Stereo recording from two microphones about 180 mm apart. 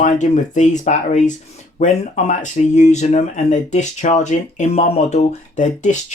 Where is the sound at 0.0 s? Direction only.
45° left (ahead or behind).